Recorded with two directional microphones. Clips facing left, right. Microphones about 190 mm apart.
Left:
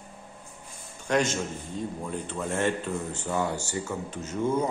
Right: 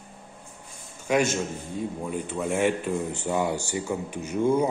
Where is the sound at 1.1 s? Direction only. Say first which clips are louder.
Right 2 dB; 10° right (ahead or behind).